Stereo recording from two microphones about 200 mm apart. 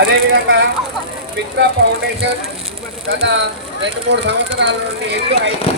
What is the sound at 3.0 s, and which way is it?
Speech, 60° right (ahead or behind).